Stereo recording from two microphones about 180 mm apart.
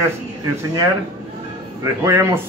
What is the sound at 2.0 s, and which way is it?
Speech, 15° right (ahead or behind).